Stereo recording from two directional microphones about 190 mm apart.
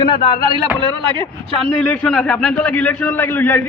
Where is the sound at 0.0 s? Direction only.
25° left (ahead or behind).